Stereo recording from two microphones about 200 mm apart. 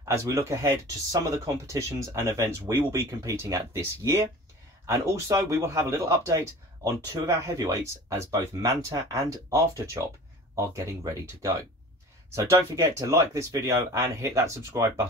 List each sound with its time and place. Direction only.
0.1 s speech: 15° right (ahead or behind)